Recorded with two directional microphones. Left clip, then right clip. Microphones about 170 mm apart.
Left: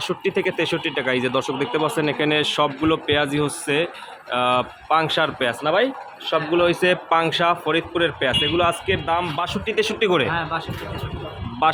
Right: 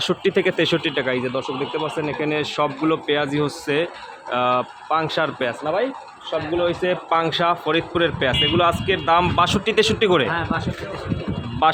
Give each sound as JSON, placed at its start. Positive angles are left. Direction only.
{"t": 0.0, "sound": "speech", "side_deg": -10}
{"t": 1.1, "sound": "speech", "side_deg": 15}
{"t": 5.6, "sound": "speech", "side_deg": 15}
{"t": 7.1, "sound": "speech", "side_deg": 0}
{"t": 9.0, "sound": "speech", "side_deg": -25}
{"t": 11.6, "sound": "speech", "side_deg": -5}